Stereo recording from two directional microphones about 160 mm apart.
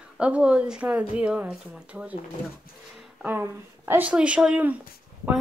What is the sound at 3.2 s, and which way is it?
A woman's voice, 10° right (ahead or behind).